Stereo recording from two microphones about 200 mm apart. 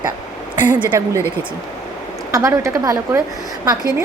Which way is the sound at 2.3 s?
15° right (ahead or behind).